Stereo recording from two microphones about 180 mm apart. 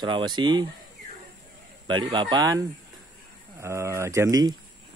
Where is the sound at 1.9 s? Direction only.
25° right (ahead or behind).